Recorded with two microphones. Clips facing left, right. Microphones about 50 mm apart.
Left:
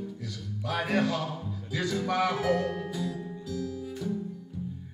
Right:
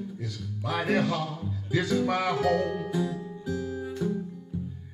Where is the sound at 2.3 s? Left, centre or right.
Centre.